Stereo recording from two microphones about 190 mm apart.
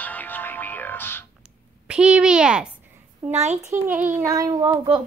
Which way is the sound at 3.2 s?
35° right (ahead or behind).